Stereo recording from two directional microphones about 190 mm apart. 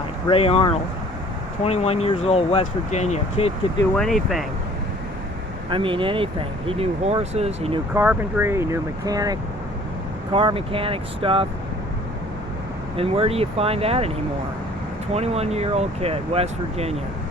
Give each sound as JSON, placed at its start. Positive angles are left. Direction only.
{"t": 0.3, "sound": "speech", "side_deg": 30}
{"t": 3.9, "sound": "speech", "side_deg": 0}
{"t": 5.7, "sound": "speech", "side_deg": -25}
{"t": 7.9, "sound": "speech", "side_deg": -10}
{"t": 13.0, "sound": "speech", "side_deg": -30}
{"t": 15.1, "sound": "speech", "side_deg": -35}